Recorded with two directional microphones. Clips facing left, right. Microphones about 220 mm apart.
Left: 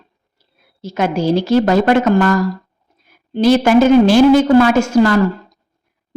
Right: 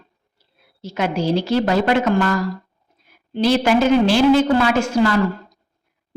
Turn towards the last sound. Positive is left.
turn(degrees=45)  # may be behind; listen again after turning